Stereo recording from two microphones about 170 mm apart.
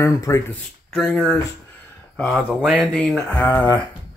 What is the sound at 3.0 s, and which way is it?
Speech, 5° left (ahead or behind).